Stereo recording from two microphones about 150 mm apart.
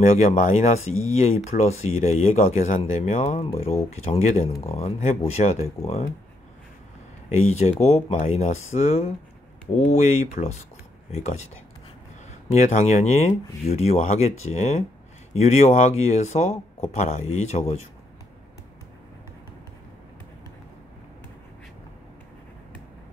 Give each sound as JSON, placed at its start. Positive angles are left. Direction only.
{"t": 0.0, "sound": "speech", "side_deg": 50}
{"t": 7.2, "sound": "speech", "side_deg": 50}